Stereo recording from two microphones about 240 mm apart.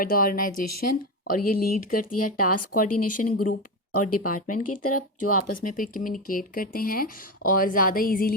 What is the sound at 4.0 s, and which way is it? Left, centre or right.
Speech, left.